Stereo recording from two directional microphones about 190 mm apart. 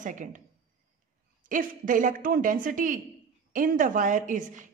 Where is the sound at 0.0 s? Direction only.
40° right (ahead or behind).